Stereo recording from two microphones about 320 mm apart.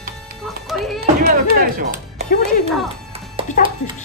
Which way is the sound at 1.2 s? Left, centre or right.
Right.